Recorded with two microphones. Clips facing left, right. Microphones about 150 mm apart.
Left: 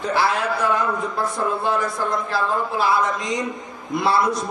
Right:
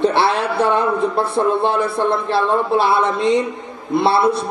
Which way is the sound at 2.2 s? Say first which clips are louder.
Right 6 dB; 30° right (ahead or behind).